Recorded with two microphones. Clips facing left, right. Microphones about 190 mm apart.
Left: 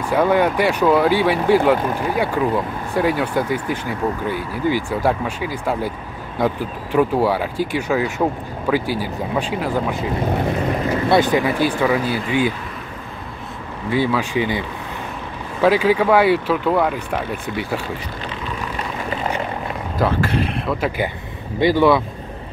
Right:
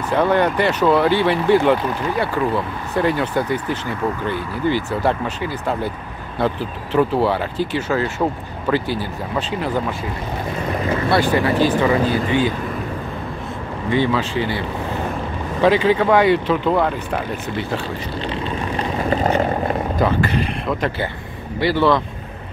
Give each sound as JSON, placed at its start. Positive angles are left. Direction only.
{"t": 0.1, "sound": "speech", "side_deg": 10}
{"t": 11.1, "sound": "speech", "side_deg": 20}
{"t": 13.8, "sound": "speech", "side_deg": 5}
{"t": 15.6, "sound": "speech", "side_deg": 5}
{"t": 19.0, "sound": "vehicle", "side_deg": -45}
{"t": 20.0, "sound": "speech", "side_deg": 0}
{"t": 21.5, "sound": "speech", "side_deg": 15}